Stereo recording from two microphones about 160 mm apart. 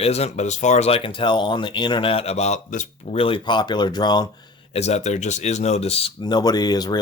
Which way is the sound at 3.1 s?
35° left (ahead or behind).